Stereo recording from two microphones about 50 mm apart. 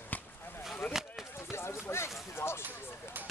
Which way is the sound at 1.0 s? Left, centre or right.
Centre.